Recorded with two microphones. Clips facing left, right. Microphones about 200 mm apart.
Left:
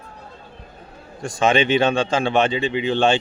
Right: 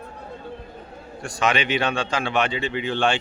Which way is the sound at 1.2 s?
25° left (ahead or behind).